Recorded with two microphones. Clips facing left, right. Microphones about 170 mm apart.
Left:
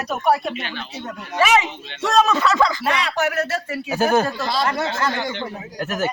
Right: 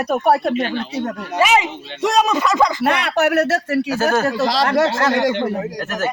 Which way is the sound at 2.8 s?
65° right (ahead or behind).